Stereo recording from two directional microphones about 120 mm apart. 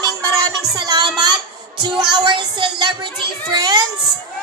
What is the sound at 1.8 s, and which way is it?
Music, 40° right (ahead or behind).